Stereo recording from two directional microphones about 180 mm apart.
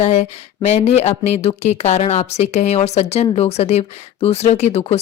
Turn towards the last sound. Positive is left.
turn(degrees=35)  # may be behind; listen again after turning